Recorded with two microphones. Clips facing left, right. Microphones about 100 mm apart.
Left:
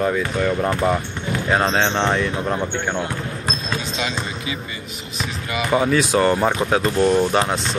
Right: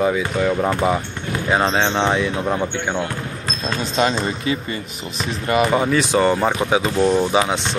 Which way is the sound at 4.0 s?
45° right (ahead or behind).